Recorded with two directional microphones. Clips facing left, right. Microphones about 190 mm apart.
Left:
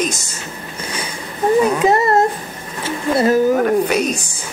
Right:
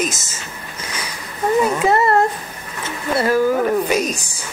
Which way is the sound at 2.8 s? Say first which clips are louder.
Left 4 dB; 25° left (ahead or behind).